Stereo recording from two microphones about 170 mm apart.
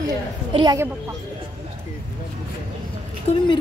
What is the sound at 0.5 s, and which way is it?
Speech, 25° right (ahead or behind).